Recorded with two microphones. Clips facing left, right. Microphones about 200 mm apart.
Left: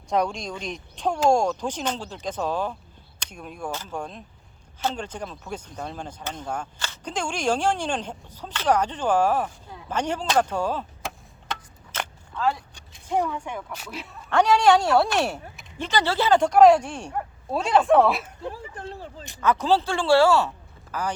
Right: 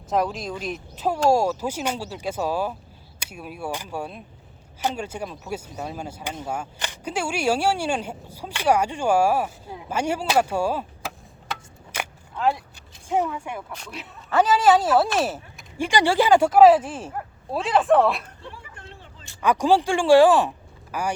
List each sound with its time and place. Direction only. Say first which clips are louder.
0.1 s speech: right 1 dB; 5° right (ahead or behind)
13.7 s speech: left 1 dB; 5° left (ahead or behind)
15.9 s speech: right 3 dB; 15° right (ahead or behind)
18.4 s a sound: left 8 dB; 35° left (ahead or behind)
19.4 s speech: right 2 dB; 15° right (ahead or behind)